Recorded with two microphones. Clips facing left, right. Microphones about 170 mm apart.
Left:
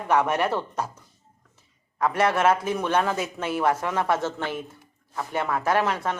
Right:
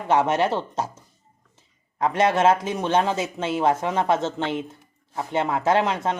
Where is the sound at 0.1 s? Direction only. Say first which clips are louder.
Right 2 dB; 25° right (ahead or behind).